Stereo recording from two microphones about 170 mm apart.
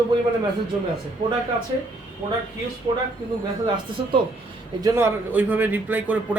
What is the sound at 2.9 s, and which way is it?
Speech, 25° right (ahead or behind).